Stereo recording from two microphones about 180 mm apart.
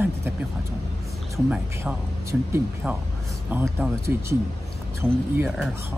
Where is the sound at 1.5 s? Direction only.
5° right (ahead or behind).